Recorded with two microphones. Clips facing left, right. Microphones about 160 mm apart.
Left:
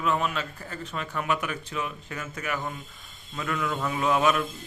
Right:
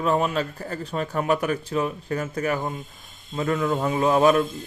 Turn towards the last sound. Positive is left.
turn(degrees=-35)  # may be behind; listen again after turning